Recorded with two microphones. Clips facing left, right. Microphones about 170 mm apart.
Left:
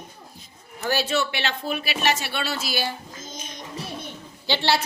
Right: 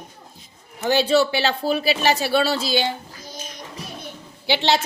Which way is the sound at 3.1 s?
20° left (ahead or behind).